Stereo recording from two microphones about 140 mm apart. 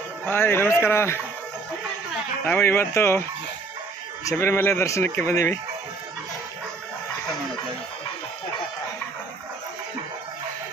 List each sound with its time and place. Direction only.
0.3 s speech: 15° left (ahead or behind)
2.5 s speech: 15° left (ahead or behind)
4.3 s speech: 20° left (ahead or behind)